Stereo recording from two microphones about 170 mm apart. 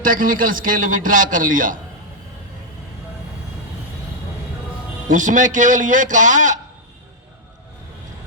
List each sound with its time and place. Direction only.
0.0 s a man's voice: 55° right (ahead or behind)
5.0 s a man's voice: 50° right (ahead or behind)